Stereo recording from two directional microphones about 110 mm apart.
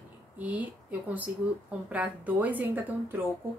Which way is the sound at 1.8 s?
15° right (ahead or behind).